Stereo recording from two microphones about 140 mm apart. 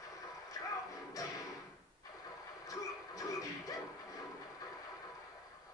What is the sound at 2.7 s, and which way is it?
Television, 25° left (ahead or behind).